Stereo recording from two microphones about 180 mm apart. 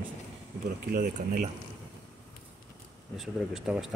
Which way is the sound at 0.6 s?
55° right (ahead or behind).